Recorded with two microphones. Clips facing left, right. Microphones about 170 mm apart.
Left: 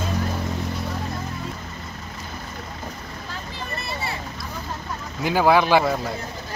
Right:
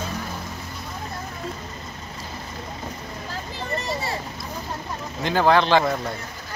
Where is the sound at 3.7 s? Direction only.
35° right (ahead or behind).